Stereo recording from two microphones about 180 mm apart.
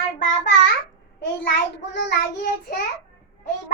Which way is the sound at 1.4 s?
80° left.